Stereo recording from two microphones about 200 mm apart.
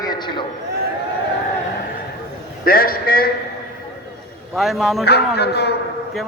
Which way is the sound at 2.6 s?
45° left (ahead or behind).